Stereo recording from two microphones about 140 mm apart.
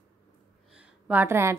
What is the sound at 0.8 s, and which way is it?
Speech, 10° right (ahead or behind).